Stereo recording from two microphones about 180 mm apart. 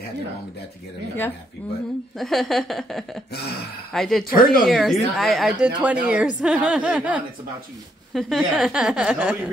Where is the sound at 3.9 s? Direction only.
Centre (ahead or behind).